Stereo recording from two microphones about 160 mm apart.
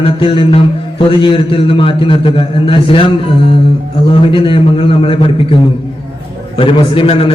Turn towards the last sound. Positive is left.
turn(degrees=35)  # may be behind; listen again after turning